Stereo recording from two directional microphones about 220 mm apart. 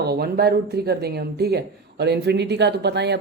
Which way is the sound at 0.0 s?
45° right (ahead or behind).